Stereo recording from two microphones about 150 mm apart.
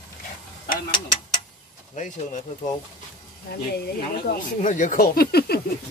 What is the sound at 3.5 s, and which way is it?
Speech, 90° left.